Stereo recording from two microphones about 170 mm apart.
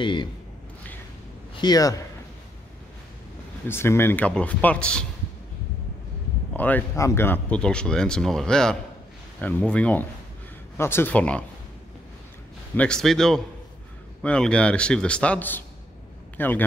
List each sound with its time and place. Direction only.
0.0 s a man's voice: 30° left (ahead or behind)
1.6 s a man's voice: 20° left (ahead or behind)
3.6 s a man's voice: 15° left (ahead or behind)
6.5 s a man's voice: 10° left (ahead or behind)
12.7 s a man's voice: 5° left (ahead or behind)